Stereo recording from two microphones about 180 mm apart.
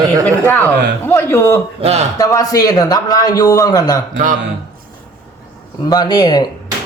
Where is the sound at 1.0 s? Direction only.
15° left (ahead or behind).